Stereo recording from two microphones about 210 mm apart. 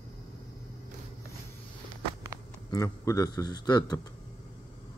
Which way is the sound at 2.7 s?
15° left (ahead or behind).